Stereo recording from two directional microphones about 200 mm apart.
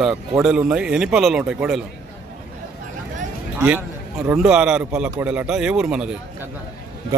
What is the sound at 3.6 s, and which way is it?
A man's voice, 5° right (ahead or behind).